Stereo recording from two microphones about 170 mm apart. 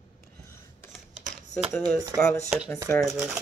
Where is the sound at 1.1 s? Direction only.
45° right (ahead or behind).